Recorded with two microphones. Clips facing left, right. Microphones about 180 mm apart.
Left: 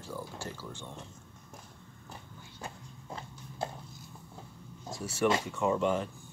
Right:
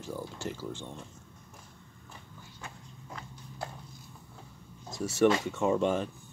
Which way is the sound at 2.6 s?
30° left (ahead or behind).